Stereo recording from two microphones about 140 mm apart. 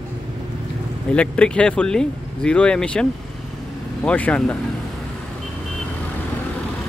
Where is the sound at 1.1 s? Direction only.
10° left (ahead or behind).